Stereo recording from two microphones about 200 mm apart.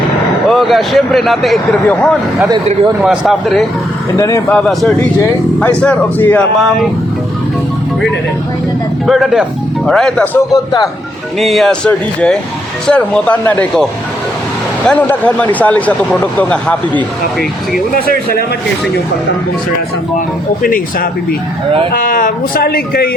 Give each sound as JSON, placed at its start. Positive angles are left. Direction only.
{"t": 0.4, "sound": "speech", "side_deg": 0}
{"t": 4.2, "sound": "speech", "side_deg": 15}
{"t": 4.5, "sound": "speech", "side_deg": 5}
{"t": 9.0, "sound": "speech", "side_deg": 0}
{"t": 10.5, "sound": "a man's voice", "side_deg": 20}
{"t": 11.3, "sound": "speech", "side_deg": 0}
{"t": 14.8, "sound": "speech", "side_deg": 10}
{"t": 17.9, "sound": "speech", "side_deg": 50}
{"t": 20.6, "sound": "speech", "side_deg": 45}